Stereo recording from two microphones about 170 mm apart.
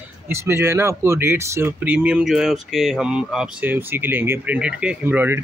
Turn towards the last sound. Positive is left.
turn(degrees=-10)  # may be behind; listen again after turning